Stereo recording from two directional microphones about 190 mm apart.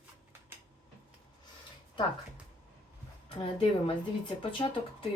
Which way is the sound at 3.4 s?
30° left (ahead or behind).